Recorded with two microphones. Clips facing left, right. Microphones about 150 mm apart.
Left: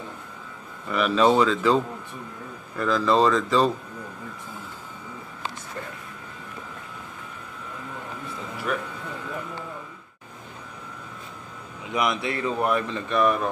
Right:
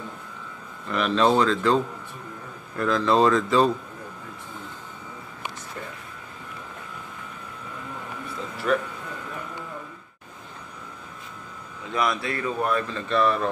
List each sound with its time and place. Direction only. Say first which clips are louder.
0.8 s speech: left 1 dB; 5° left (ahead or behind)
8.7 s speech: right 5 dB; 10° left (ahead or behind)
11.9 s speech: even; 20° left (ahead or behind)